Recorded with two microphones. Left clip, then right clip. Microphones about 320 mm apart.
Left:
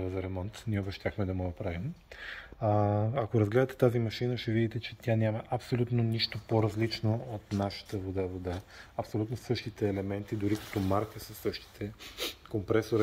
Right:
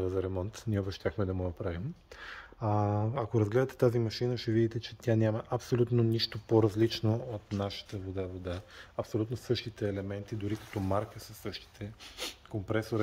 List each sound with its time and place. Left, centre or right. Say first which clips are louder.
0.0 s speech: right 4 dB; centre
7.5 s speech: left 4 dB; centre